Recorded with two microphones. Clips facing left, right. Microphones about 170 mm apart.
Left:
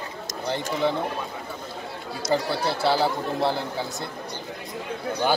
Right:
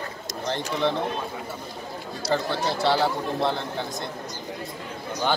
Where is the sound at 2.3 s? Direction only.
10° left (ahead or behind).